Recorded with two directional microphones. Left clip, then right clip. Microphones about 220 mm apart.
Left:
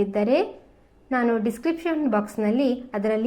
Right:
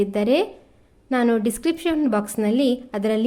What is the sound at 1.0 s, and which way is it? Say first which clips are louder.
A woman's voice: right 2 dB; 35° right (ahead or behind).